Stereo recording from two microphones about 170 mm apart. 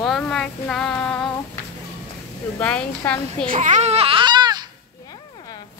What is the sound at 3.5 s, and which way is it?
Speech, 45° right (ahead or behind).